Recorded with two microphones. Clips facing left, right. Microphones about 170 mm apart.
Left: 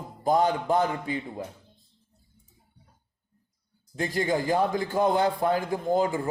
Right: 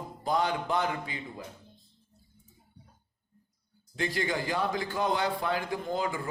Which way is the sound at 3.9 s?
45° left (ahead or behind).